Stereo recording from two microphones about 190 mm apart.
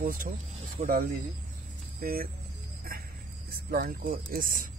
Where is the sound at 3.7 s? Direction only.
50° right (ahead or behind).